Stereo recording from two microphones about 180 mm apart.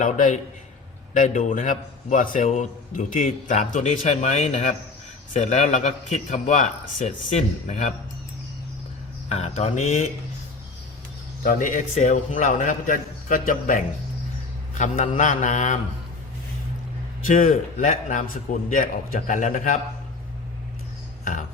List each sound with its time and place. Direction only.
0.0 s a man's voice: 45° left (ahead or behind)
9.3 s a man's voice: 35° left (ahead or behind)
11.4 s a man's voice: 45° left (ahead or behind)
15.2 s a man's voice: 45° left (ahead or behind)
17.2 s a man's voice: 45° left (ahead or behind)